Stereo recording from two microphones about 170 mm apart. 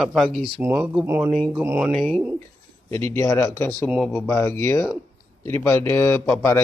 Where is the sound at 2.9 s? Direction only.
15° left (ahead or behind).